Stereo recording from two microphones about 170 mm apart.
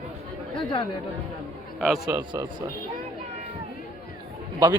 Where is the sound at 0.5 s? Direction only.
30° left (ahead or behind).